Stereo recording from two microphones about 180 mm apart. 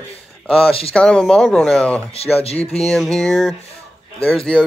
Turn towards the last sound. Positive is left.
turn(degrees=5)  # may be behind; listen again after turning